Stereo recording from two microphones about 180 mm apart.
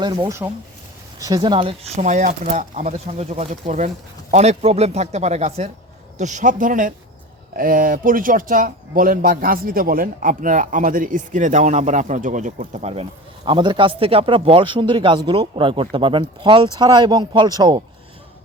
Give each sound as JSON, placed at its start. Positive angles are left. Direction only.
{"t": 0.0, "sound": "speech", "side_deg": -25}
{"t": 13.4, "sound": "speech", "side_deg": -25}